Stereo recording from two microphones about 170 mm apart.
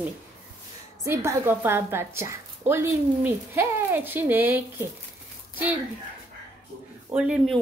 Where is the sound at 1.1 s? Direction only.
15° right (ahead or behind).